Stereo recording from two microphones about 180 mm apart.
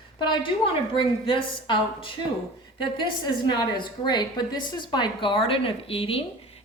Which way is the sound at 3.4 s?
25° left (ahead or behind).